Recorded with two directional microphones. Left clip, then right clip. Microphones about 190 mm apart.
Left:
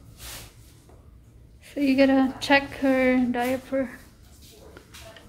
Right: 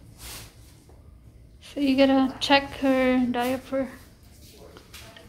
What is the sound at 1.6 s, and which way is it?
Speech, 10° left (ahead or behind).